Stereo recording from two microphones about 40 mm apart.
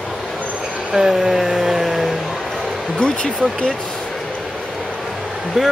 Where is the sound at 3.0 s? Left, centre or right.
Left.